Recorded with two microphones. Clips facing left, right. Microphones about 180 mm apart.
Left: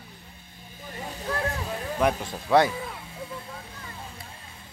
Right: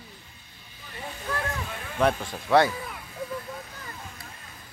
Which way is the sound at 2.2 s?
20° left (ahead or behind).